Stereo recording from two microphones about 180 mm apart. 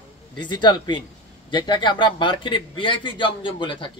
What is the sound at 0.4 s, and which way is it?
Speech, 25° left (ahead or behind).